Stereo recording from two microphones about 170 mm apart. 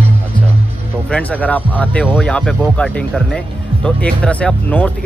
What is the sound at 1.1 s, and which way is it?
Speech, 10° left (ahead or behind).